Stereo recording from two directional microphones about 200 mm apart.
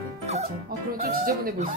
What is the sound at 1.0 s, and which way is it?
Speech, 45° right (ahead or behind).